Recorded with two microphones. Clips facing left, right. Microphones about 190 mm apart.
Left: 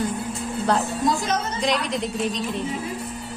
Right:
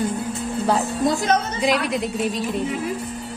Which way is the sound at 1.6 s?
5° right (ahead or behind).